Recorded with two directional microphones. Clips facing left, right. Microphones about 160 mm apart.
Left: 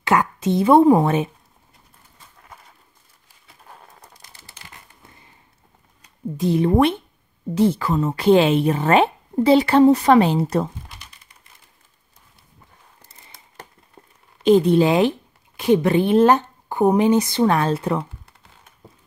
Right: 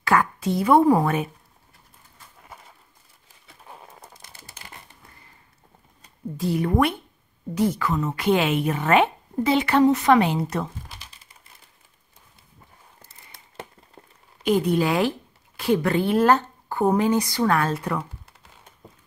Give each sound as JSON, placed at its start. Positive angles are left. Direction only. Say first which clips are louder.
{"t": 0.0, "sound": "a woman's voice", "louder": "left 2 dB", "side_deg": 20}
{"t": 3.7, "sound": "a sound", "louder": "right 2 dB", "side_deg": -5}
{"t": 6.3, "sound": "a woman's voice", "louder": "left 5 dB", "side_deg": 20}
{"t": 14.4, "sound": "speech", "louder": "left 6 dB", "side_deg": 25}